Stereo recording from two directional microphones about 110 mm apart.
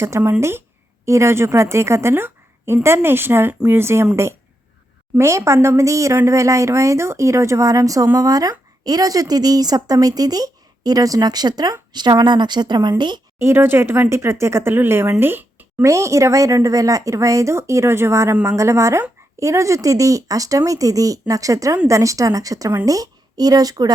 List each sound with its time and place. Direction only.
0.0 s a woman's voice: 25° right (ahead or behind); by 13.2 s 45° right (ahead or behind)
13.4 s a woman's voice: 20° right (ahead or behind)